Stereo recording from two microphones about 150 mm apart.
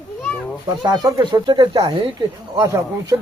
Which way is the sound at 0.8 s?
25° right (ahead or behind).